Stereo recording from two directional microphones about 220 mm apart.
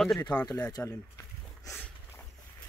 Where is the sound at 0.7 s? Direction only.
15° left (ahead or behind).